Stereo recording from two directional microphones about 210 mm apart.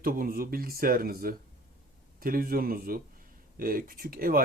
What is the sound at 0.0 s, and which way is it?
Speech, 45° right (ahead or behind).